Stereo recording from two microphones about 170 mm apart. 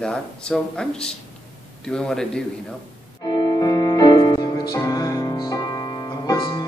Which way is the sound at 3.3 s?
25° left (ahead or behind).